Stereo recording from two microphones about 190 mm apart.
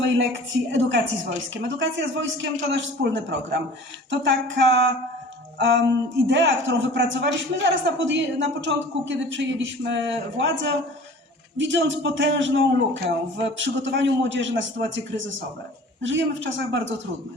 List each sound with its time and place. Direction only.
0.0 s a man's voice: 75° right (ahead or behind)
5.5 s music: 65° right (ahead or behind)
6.2 s a man's voice: 70° right (ahead or behind)